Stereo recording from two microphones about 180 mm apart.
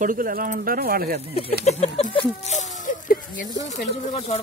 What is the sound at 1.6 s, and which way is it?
Speech, 35° left (ahead or behind).